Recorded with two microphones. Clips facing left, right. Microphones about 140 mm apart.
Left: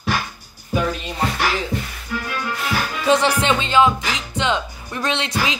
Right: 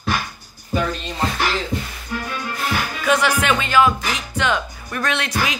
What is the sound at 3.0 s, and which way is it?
Music, 30° left (ahead or behind).